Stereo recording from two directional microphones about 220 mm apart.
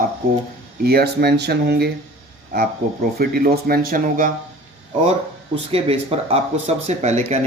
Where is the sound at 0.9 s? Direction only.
45° right (ahead or behind).